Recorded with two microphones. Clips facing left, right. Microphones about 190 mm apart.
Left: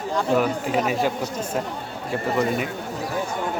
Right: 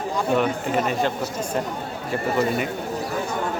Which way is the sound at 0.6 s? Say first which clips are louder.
Even; 5° left (ahead or behind).